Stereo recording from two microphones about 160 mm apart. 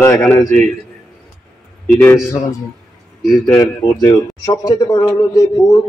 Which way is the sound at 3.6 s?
25° left (ahead or behind).